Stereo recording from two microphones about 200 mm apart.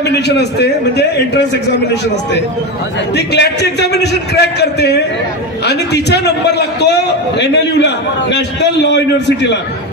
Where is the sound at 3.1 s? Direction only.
55° left (ahead or behind).